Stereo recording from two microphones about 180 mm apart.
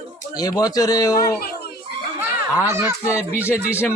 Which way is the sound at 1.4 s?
55° left (ahead or behind).